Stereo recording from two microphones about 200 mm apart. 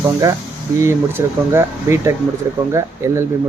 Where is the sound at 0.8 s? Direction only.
15° right (ahead or behind).